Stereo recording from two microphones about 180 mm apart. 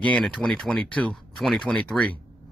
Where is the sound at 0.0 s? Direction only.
5° left (ahead or behind).